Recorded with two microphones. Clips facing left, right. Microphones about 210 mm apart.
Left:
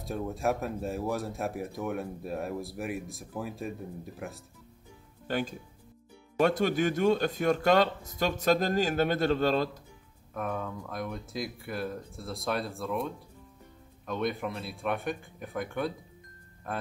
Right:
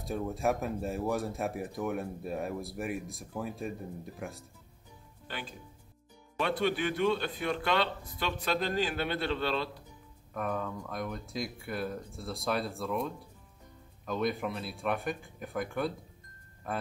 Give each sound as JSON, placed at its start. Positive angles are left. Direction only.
{"t": 0.0, "sound": "speech", "side_deg": 0}
{"t": 5.3, "sound": "speech", "side_deg": 45}
{"t": 10.3, "sound": "a man's voice", "side_deg": 0}